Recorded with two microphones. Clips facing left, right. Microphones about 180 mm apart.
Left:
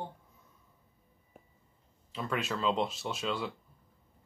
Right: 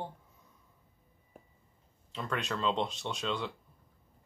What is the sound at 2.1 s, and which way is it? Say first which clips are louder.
Speech: left 1 dB; 5° left (ahead or behind).